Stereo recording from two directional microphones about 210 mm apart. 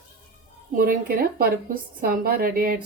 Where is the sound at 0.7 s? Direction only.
45° right (ahead or behind).